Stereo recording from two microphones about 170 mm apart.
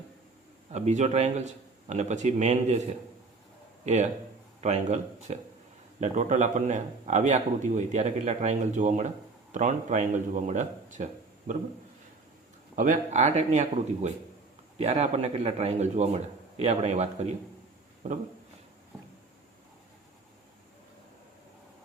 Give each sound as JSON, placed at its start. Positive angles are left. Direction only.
{"t": 0.7, "sound": "a man's voice", "side_deg": -40}
{"t": 3.8, "sound": "a man's voice", "side_deg": -40}
{"t": 12.7, "sound": "a man's voice", "side_deg": -50}